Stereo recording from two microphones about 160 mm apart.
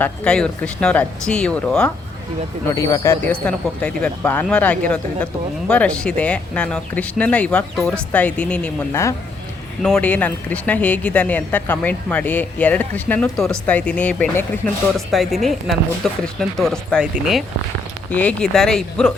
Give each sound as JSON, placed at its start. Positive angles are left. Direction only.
{"t": 0.0, "sound": "speech", "side_deg": 5}
{"t": 2.7, "sound": "speech", "side_deg": 20}
{"t": 3.4, "sound": "speech", "side_deg": 5}
{"t": 8.9, "sound": "speech", "side_deg": 20}
{"t": 9.8, "sound": "speech", "side_deg": 5}